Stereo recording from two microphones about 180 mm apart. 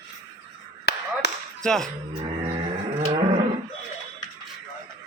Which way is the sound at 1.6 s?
Centre (ahead or behind).